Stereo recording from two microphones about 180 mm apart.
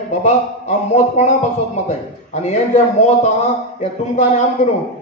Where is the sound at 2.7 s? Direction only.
40° left (ahead or behind).